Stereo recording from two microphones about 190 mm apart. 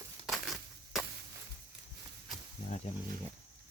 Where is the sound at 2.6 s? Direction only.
40° left (ahead or behind).